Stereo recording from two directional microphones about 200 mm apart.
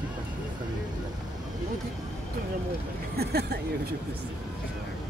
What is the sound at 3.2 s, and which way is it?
Speech, 55° right (ahead or behind).